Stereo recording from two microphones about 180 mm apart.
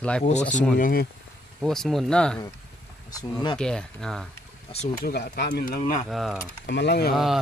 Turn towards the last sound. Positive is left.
turn(degrees=0)  # may be behind; listen again after turning